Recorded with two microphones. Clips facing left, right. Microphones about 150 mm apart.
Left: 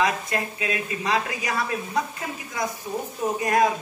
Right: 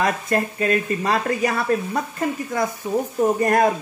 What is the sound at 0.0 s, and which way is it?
Speech, 50° right (ahead or behind).